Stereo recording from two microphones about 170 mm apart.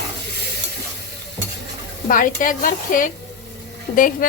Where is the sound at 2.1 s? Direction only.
55° left (ahead or behind).